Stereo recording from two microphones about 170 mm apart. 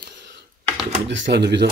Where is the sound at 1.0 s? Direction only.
90° right.